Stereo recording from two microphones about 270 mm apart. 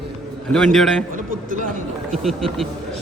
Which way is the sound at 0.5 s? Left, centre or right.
Centre.